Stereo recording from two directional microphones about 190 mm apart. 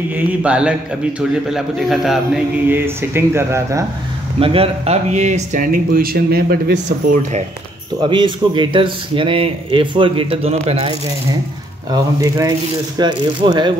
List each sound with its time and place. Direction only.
0.1 s a man's voice: 5° right (ahead or behind)
3.0 s speech: 15° right (ahead or behind)
4.4 s speech: 30° right (ahead or behind); by 6.8 s 55° right (ahead or behind)
8.0 s speech: 25° right (ahead or behind)
11.9 s speech: 20° right (ahead or behind)